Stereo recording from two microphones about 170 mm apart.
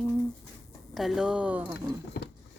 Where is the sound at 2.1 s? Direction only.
70° left (ahead or behind).